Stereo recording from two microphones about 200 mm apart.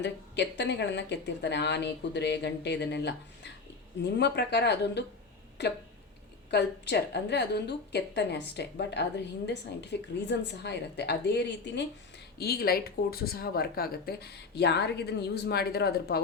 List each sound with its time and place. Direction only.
0.0 s a woman's voice: 60° left (ahead or behind)
12.4 s speech: 50° left (ahead or behind)